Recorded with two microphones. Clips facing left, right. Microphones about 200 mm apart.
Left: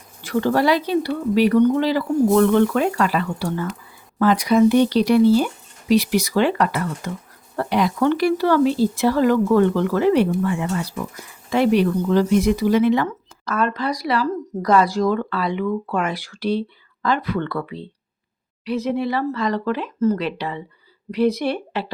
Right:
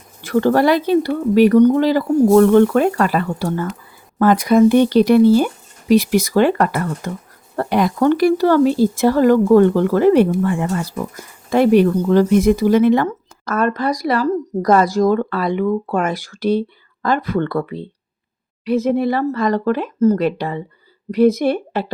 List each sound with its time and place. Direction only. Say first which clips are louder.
0.3 s speech: right 4 dB; 50° right (ahead or behind)